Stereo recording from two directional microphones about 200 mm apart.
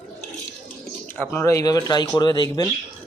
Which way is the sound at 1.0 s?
10° left (ahead or behind).